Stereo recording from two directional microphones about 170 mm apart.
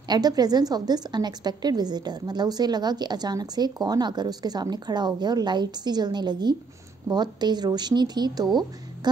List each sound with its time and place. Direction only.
0.1 s a woman's voice: 25° right (ahead or behind)